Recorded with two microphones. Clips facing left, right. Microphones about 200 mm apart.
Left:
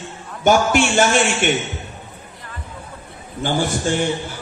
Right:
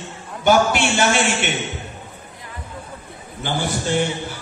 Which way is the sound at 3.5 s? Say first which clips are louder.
Left 2 dB; 45° left (ahead or behind).